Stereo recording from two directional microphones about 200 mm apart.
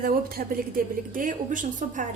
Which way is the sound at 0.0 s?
45° right (ahead or behind).